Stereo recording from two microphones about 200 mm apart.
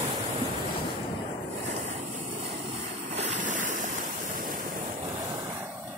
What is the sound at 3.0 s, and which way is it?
Waves, 35° right (ahead or behind).